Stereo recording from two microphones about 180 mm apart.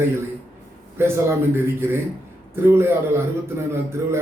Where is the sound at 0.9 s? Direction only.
15° right (ahead or behind).